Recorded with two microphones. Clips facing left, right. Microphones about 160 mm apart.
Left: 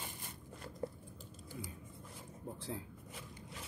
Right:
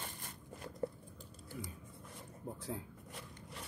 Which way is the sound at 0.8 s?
10° left (ahead or behind).